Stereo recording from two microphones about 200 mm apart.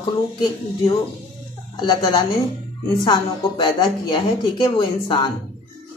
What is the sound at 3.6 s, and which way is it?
A woman's voice, 20° left (ahead or behind).